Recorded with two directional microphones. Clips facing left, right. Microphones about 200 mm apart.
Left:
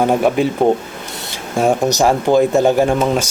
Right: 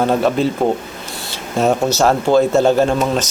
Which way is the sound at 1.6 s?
15° left (ahead or behind).